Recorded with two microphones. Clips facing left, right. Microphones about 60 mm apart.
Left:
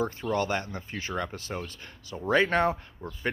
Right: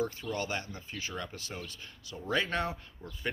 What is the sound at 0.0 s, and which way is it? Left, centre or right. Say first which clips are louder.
Speech: left 6 dB; left.